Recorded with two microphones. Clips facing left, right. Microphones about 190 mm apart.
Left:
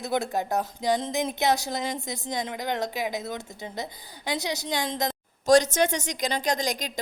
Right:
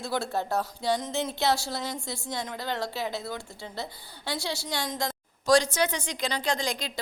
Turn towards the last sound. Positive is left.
turn(degrees=40)  # may be behind; listen again after turning